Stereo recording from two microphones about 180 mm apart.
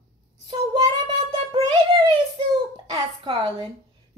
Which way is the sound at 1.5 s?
20° right (ahead or behind).